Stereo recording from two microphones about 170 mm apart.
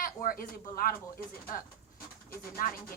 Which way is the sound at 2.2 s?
55° left (ahead or behind).